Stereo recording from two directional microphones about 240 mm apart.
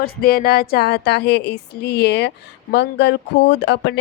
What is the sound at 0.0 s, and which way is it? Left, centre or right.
Speech, left.